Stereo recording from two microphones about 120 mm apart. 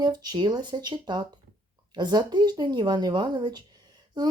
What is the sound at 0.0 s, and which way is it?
Speech, 35° right (ahead or behind).